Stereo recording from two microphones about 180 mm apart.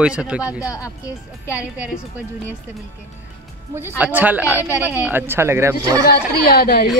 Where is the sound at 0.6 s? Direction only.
20° left (ahead or behind).